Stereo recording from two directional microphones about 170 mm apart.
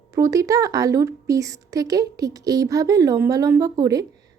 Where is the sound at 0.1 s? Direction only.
20° right (ahead or behind).